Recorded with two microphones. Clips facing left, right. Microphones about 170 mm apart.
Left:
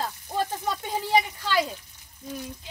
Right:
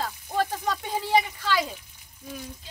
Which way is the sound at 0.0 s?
10° left (ahead or behind).